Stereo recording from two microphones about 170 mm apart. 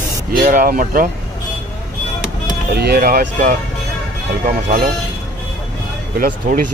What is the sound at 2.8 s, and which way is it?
Speech, 65° right (ahead or behind).